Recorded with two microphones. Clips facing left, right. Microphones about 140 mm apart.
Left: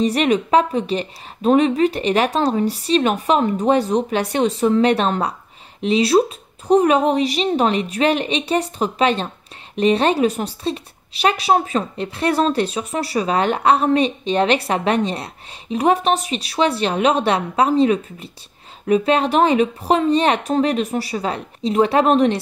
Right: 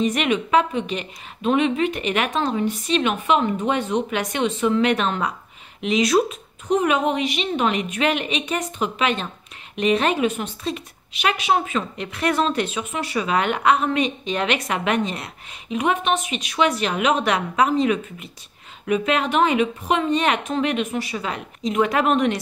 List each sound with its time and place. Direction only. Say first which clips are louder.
0.0 s a woman's voice: left 4 dB; 35° left (ahead or behind)